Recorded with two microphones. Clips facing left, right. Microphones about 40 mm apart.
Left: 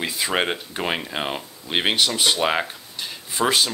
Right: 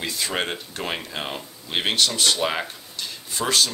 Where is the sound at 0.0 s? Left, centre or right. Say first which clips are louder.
Left 3 dB; centre.